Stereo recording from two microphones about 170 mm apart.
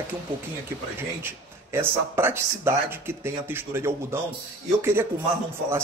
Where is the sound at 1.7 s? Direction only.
15° right (ahead or behind).